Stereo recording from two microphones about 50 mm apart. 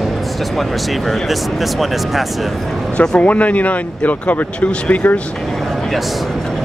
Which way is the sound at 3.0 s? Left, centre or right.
Left.